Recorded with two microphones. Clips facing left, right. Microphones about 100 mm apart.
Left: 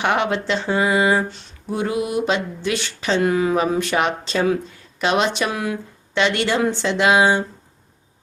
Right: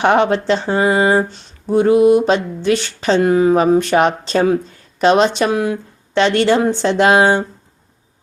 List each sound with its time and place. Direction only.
0.0 s speech: 35° right (ahead or behind)